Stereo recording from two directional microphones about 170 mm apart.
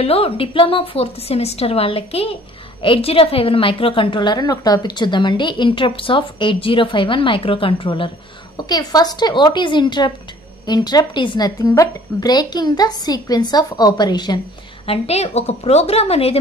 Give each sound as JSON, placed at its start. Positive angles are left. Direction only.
{"t": 0.0, "sound": "a woman's voice", "side_deg": 35}
{"t": 14.9, "sound": "a woman's voice", "side_deg": 40}